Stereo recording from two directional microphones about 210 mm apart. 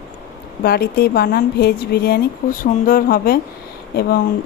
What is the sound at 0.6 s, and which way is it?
Speech, 50° left (ahead or behind).